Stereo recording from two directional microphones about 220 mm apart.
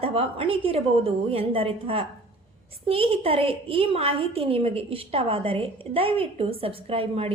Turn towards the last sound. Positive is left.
turn(degrees=-25)  # may be behind; listen again after turning